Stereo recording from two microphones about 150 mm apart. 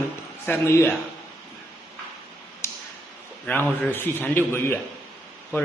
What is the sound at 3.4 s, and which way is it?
Speech, 10° left (ahead or behind).